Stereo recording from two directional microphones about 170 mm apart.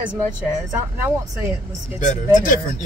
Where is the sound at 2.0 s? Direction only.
45° left (ahead or behind).